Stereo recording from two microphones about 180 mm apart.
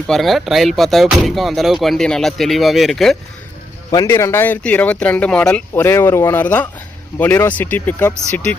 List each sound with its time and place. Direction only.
0.1 s speech: centre (ahead or behind)
3.9 s speech: 15° left (ahead or behind)